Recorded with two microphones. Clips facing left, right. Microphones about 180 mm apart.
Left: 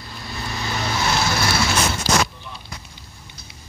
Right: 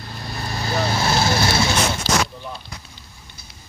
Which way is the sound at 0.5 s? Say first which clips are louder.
Right 4 dB; 35° right (ahead or behind).